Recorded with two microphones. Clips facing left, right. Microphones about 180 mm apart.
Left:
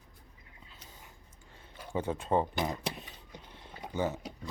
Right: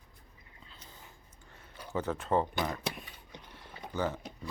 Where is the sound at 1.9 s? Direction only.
15° left (ahead or behind).